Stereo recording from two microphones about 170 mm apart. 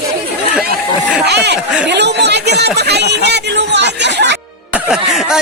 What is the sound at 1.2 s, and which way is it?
Speech, 75° right (ahead or behind).